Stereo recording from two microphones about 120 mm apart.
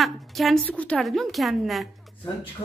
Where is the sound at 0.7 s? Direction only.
10° left (ahead or behind).